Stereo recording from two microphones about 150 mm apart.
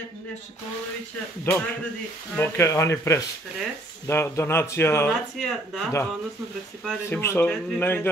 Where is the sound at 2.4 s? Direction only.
15° left (ahead or behind).